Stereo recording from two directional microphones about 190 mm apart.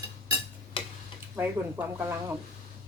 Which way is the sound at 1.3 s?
10° right (ahead or behind).